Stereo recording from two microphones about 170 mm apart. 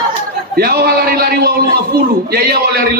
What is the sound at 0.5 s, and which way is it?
A man's voice, 65° right (ahead or behind).